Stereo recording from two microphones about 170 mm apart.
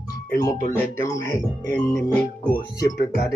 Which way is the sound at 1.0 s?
15° left (ahead or behind).